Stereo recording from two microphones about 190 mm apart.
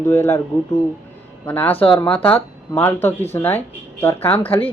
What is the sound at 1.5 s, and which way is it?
Speech, 10° left (ahead or behind).